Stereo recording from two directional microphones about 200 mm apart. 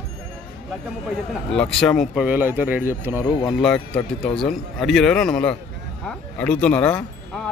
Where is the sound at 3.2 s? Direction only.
20° left (ahead or behind).